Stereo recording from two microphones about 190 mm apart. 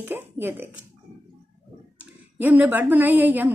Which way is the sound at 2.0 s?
10° right (ahead or behind).